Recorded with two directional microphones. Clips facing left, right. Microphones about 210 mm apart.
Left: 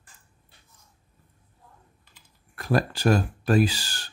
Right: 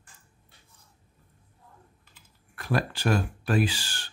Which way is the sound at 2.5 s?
40° left (ahead or behind).